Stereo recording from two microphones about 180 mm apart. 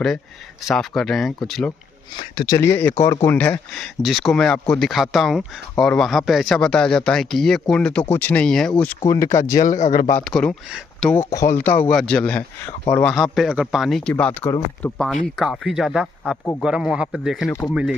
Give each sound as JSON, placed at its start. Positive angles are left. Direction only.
{"t": 0.7, "sound": "speech", "side_deg": 0}
{"t": 2.1, "sound": "speech", "side_deg": 25}
{"t": 9.7, "sound": "speech", "side_deg": 45}
{"t": 10.3, "sound": "speech", "side_deg": 5}
{"t": 11.1, "sound": "speech", "side_deg": 15}